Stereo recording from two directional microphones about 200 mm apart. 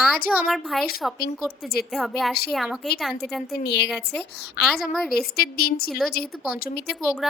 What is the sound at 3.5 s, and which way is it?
Speech, 55° left (ahead or behind).